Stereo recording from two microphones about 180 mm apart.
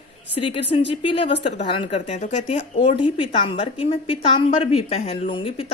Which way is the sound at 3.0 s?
30° left (ahead or behind).